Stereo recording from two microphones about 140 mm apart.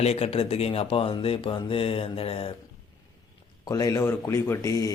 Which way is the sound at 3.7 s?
25° left (ahead or behind).